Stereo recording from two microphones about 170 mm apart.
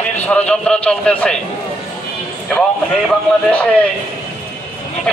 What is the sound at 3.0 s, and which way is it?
Speech, 5° left (ahead or behind).